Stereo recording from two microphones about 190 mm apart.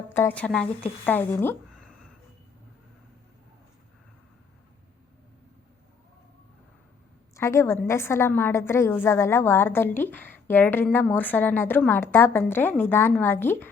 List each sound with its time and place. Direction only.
0.1 s a woman's voice: 10° left (ahead or behind)
7.3 s a woman's voice: 15° left (ahead or behind)